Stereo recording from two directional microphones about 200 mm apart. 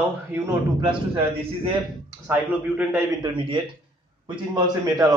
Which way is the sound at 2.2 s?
10° right (ahead or behind).